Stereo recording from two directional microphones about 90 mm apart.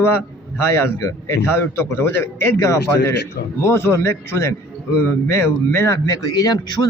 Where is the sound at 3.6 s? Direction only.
30° left (ahead or behind).